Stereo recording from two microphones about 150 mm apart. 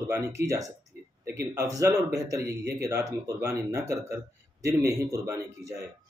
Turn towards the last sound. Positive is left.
turn(degrees=-20)  # may be behind; listen again after turning